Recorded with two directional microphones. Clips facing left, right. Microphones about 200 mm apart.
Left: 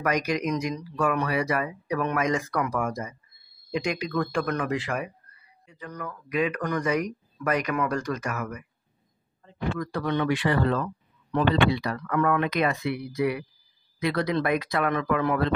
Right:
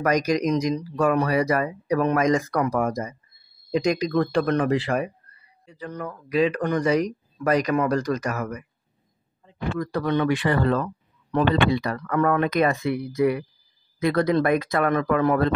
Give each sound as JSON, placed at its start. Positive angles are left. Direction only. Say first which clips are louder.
{"t": 0.0, "sound": "speech", "louder": "right 5 dB", "side_deg": -40}
{"t": 9.8, "sound": "speech", "louder": "right 5 dB", "side_deg": -40}